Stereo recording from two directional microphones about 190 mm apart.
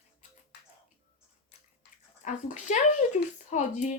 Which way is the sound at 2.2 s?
40° left (ahead or behind).